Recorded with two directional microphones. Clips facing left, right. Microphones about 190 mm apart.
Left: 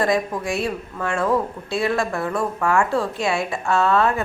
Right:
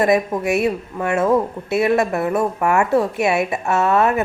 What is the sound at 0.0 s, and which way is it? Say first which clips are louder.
A woman's voice: right 4 dB; 20° right (ahead or behind).